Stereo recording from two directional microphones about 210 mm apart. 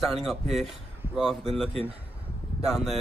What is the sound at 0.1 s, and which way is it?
Speech, centre (ahead or behind).